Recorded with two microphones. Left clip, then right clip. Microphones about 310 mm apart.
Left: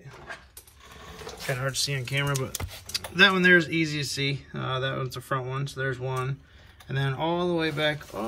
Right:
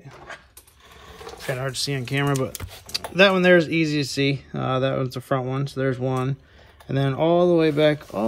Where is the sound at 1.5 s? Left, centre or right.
Centre.